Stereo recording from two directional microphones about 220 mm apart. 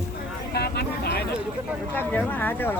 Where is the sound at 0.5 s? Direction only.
45° left (ahead or behind).